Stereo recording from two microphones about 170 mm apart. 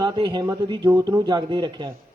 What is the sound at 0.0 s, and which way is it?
A man's voice, 25° right (ahead or behind).